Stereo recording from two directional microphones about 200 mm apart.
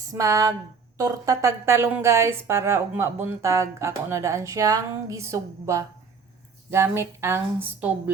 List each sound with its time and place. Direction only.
0.1 s a woman's voice: 15° right (ahead or behind)